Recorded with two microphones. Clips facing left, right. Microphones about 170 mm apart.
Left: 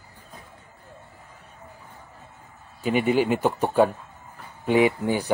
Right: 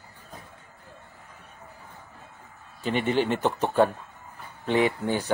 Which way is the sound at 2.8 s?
10° left (ahead or behind).